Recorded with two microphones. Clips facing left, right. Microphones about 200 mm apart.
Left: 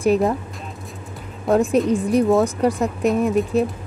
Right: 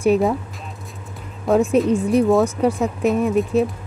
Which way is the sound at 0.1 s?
Centre (ahead or behind).